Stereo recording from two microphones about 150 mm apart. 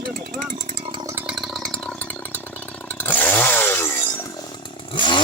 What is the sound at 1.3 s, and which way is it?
Chainsaw, centre (ahead or behind).